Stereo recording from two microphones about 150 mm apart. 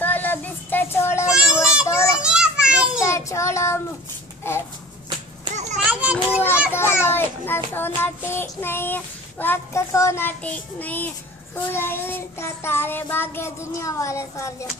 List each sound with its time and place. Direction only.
0.0 s a sound: 10° left (ahead or behind)
1.2 s child singing: 5° right (ahead or behind)
1.9 s children playing: 20° left (ahead or behind)
2.2 s children playing: 5° right (ahead or behind)
3.0 s child singing: 20° left (ahead or behind)
4.4 s a sound: 15° left (ahead or behind)
5.5 s children playing: 50° right (ahead or behind)
5.9 s children playing: 10° right (ahead or behind)
6.7 s child singing: 15° left (ahead or behind)